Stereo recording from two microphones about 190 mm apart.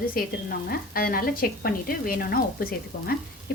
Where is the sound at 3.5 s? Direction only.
55° left (ahead or behind).